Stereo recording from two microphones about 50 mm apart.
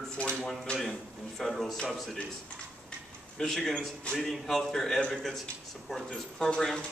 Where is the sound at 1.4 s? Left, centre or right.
Centre.